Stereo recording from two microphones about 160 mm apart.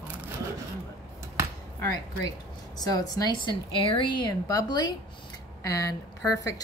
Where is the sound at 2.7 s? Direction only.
25° left (ahead or behind).